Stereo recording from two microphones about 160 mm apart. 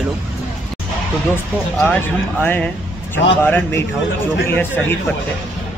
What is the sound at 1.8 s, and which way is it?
A man's voice, 15° left (ahead or behind).